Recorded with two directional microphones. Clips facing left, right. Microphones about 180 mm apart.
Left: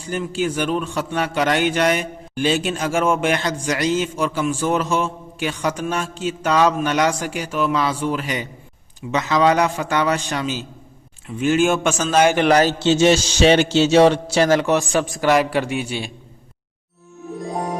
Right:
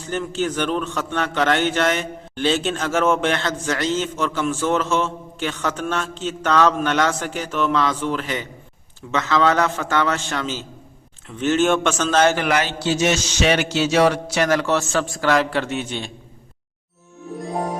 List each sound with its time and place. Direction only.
0.1 s a man's voice: 10° left (ahead or behind)
12.4 s a man's voice: 35° left (ahead or behind)
12.8 s a sound: 25° left (ahead or behind)
14.7 s a man's voice: 15° left (ahead or behind)